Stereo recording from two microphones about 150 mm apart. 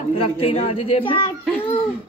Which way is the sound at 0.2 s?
40° left (ahead or behind).